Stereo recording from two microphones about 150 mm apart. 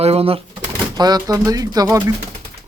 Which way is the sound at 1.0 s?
25° right (ahead or behind).